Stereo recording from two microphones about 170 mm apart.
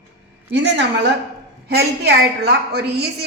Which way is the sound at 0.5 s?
90° right.